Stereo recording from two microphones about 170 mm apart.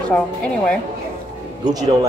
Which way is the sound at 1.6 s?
20° right (ahead or behind).